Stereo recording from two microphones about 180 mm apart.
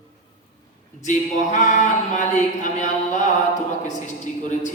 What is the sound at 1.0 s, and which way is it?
A capella, 40° left (ahead or behind).